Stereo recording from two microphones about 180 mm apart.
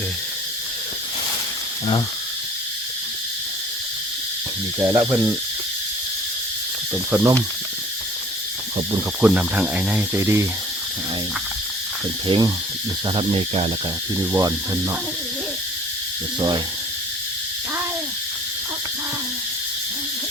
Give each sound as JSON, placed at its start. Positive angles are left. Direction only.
{"t": 4.8, "sound": "speech", "side_deg": -15}
{"t": 6.9, "sound": "speech", "side_deg": -10}
{"t": 9.2, "sound": "speech", "side_deg": -5}
{"t": 12.3, "sound": "speech", "side_deg": -30}
{"t": 13.1, "sound": "a sound", "side_deg": -30}
{"t": 14.2, "sound": "speech", "side_deg": -20}